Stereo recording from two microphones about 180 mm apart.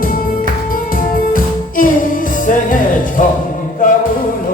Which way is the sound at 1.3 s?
50° left (ahead or behind).